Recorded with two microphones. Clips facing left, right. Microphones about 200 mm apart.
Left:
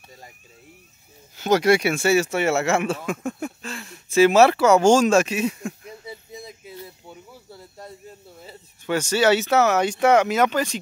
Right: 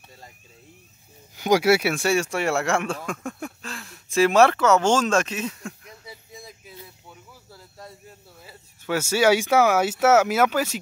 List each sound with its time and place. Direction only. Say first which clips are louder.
1.3 s speech: left 1 dB; 10° right (ahead or behind); by 5.8 s 10° left (ahead or behind)
6.0 s a sound: left 4 dB; 20° left (ahead or behind)
8.8 s speech: even; 5° right (ahead or behind)